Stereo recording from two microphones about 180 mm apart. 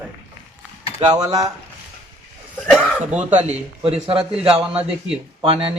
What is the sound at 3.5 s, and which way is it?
Speech, 30° right (ahead or behind).